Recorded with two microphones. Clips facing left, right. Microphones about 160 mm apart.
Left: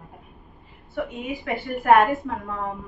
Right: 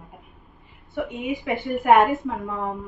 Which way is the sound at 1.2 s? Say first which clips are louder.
Right 3 dB; 20° right (ahead or behind).